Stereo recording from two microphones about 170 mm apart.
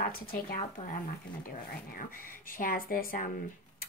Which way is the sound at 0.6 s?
50° left (ahead or behind).